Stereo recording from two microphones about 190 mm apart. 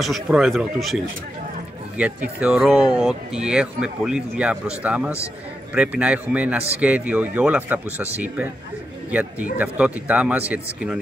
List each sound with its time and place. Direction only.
0.0 s speech: centre (ahead or behind)
9.1 s speech: 10° right (ahead or behind)